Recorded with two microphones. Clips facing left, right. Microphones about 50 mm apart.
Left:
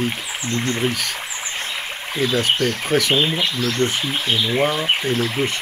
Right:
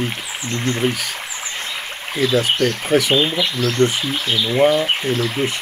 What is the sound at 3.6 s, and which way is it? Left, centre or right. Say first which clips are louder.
Speech: right 6 dB; right.